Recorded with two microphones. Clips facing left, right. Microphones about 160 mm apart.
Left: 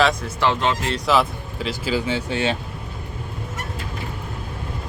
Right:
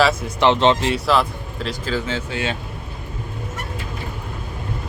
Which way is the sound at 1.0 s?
Centre (ahead or behind).